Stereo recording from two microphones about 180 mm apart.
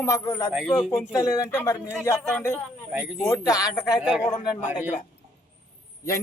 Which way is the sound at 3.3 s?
20° left (ahead or behind).